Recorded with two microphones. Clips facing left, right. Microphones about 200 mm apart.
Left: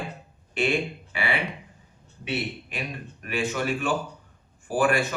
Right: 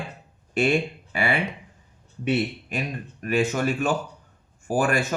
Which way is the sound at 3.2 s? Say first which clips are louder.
Right 5 dB; 40° right (ahead or behind).